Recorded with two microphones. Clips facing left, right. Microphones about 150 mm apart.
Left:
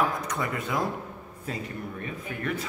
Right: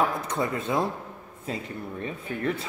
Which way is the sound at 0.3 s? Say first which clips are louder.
Right 3 dB; 25° right (ahead or behind).